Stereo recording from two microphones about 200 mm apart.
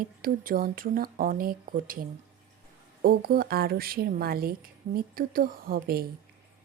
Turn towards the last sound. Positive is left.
turn(degrees=-50)  # may be behind; listen again after turning